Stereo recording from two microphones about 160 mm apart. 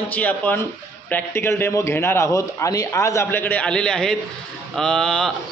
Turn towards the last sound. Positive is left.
turn(degrees=5)  # may be behind; listen again after turning